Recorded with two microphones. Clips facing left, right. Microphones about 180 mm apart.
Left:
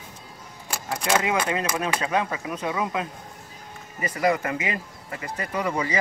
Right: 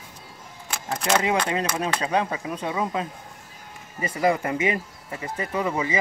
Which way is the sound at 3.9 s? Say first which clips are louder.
Right 1 dB; 30° right (ahead or behind).